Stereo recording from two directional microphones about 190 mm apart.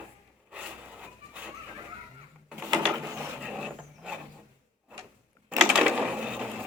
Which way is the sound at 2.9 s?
15° right (ahead or behind).